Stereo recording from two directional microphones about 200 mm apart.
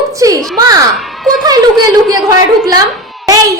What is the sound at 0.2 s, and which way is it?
Speech, 15° right (ahead or behind).